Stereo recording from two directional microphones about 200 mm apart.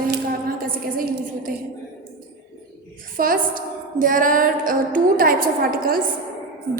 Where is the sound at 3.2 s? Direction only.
45° right (ahead or behind).